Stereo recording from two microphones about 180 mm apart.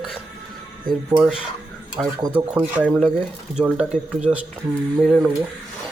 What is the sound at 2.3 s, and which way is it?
A man's voice, 10° right (ahead or behind).